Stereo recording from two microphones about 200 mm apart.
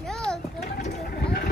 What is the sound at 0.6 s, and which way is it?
Speech, 45° left (ahead or behind).